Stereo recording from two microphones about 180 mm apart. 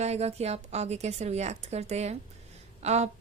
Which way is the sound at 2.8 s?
40° right (ahead or behind).